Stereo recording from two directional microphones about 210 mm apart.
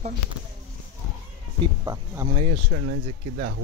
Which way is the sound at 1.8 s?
15° right (ahead or behind).